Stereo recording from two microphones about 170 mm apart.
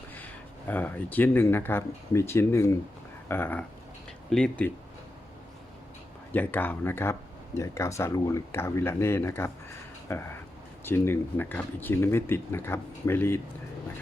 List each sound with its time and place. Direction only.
0.7 s speech: 10° left (ahead or behind)
6.3 s speech: 10° left (ahead or behind)